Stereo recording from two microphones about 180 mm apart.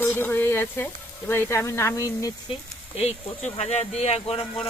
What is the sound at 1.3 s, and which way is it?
Speech, 15° left (ahead or behind).